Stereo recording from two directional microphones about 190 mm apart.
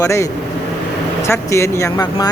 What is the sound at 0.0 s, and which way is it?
Speech, 15° left (ahead or behind).